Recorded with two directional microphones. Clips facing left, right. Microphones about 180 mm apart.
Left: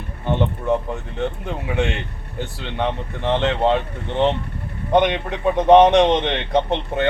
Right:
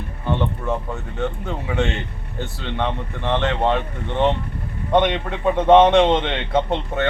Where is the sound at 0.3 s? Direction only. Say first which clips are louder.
Left 3 dB; 20° left (ahead or behind).